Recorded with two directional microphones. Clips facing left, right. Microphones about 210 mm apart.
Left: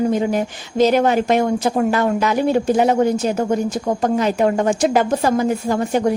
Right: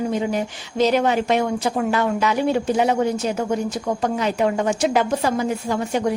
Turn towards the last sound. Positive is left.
turn(degrees=45)  # may be behind; listen again after turning